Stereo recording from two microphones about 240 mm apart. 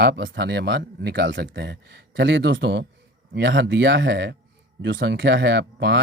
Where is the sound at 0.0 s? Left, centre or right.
Right.